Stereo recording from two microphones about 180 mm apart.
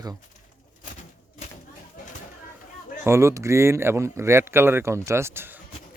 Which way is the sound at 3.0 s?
15° right (ahead or behind).